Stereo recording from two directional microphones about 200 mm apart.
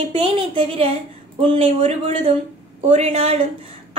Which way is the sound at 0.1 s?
25° right (ahead or behind).